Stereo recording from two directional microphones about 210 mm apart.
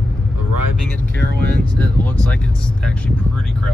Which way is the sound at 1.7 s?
5° left (ahead or behind).